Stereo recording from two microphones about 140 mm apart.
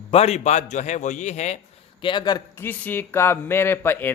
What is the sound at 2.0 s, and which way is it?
Speech, 35° left (ahead or behind).